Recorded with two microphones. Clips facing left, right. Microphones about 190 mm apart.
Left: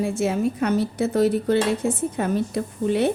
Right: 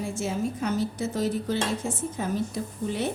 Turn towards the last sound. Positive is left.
turn(degrees=65)  # may be behind; listen again after turning